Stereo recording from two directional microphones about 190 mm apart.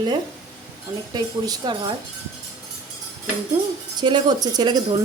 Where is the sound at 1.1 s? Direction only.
25° right (ahead or behind).